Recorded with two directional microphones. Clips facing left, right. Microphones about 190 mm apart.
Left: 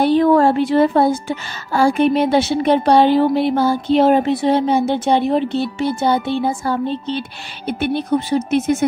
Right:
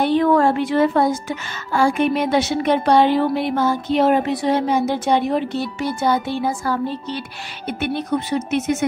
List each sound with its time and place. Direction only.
0.0 s a woman's voice: 35° left (ahead or behind)